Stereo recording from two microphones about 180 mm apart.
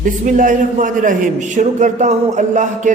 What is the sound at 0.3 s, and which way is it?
Speech, 45° right (ahead or behind).